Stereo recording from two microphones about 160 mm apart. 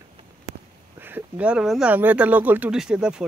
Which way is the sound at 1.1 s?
10° right (ahead or behind).